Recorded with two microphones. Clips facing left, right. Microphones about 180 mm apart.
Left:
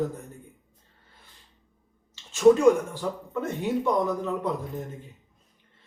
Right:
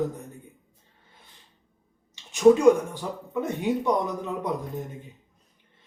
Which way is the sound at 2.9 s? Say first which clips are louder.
Even; 15° right (ahead or behind).